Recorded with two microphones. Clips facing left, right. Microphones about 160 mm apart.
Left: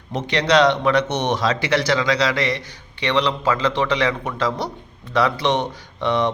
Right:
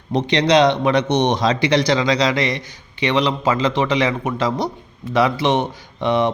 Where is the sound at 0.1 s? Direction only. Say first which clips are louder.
Right 3 dB; 20° right (ahead or behind).